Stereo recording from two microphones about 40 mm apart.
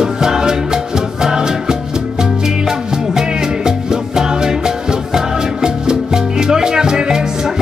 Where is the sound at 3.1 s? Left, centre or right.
Centre.